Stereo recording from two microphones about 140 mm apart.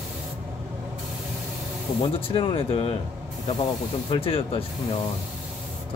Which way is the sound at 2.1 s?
40° left (ahead or behind).